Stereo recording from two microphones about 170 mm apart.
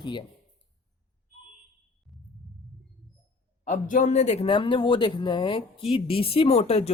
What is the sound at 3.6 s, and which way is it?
A woman's voice, 45° left (ahead or behind).